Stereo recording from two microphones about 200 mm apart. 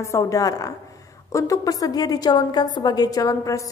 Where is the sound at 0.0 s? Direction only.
15° left (ahead or behind).